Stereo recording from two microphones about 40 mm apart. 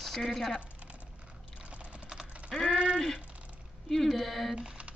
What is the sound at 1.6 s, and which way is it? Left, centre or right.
Typing, right.